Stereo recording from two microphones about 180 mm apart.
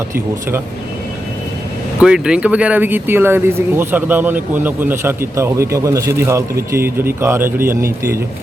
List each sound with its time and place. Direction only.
2.0 s speech: 5° right (ahead or behind)